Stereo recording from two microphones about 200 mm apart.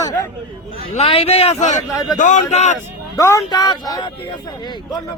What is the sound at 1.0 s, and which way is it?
A man's voice, 30° left (ahead or behind).